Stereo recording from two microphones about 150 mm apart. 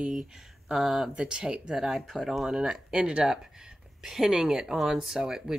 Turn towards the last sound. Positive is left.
turn(degrees=-5)  # may be behind; listen again after turning